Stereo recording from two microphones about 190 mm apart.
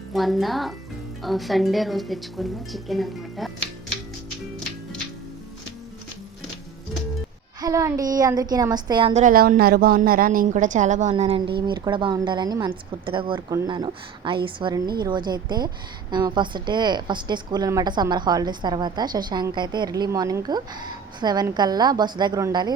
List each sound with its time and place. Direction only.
0.1 s a woman's voice: centre (ahead or behind)
7.6 s a woman's voice: 15° right (ahead or behind)
9.2 s a woman's voice: 45° right (ahead or behind)
11.1 s a woman's voice: 30° right (ahead or behind)